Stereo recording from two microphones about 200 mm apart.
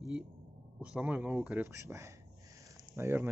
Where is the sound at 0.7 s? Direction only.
5° right (ahead or behind).